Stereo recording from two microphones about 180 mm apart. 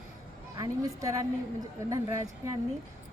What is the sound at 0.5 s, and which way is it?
A woman's voice, 20° right (ahead or behind).